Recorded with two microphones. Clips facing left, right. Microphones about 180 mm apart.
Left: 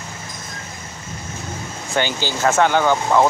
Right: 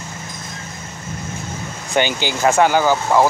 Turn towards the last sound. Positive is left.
turn(degrees=-5)  # may be behind; listen again after turning